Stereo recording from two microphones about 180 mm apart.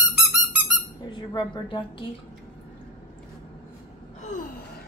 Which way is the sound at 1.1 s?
25° left (ahead or behind).